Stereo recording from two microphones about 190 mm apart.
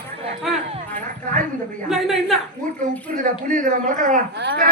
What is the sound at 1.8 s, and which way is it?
Speech, centre (ahead or behind).